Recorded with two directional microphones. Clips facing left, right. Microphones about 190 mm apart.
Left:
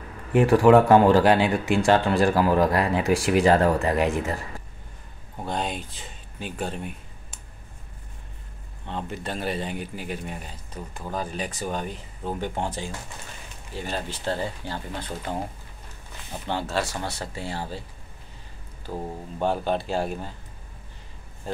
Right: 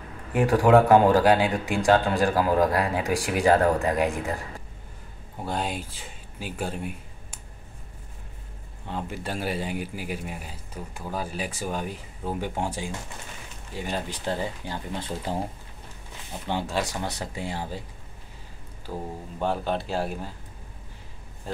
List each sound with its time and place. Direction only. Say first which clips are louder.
0.3 s speech: left 3 dB; 15° right (ahead or behind)
8.8 s speech: even; 10° right (ahead or behind)
15.0 s speech: right 1 dB; 25° right (ahead or behind)
16.4 s speech: left 1 dB; 15° right (ahead or behind)
18.9 s speech: left 2 dB; 5° left (ahead or behind)